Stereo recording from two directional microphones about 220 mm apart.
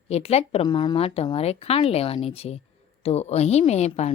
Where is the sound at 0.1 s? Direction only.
30° left (ahead or behind).